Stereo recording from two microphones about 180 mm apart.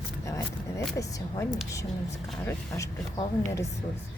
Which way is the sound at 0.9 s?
20° left (ahead or behind).